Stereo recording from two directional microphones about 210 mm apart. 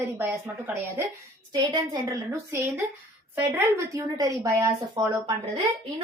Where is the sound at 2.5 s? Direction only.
10° right (ahead or behind).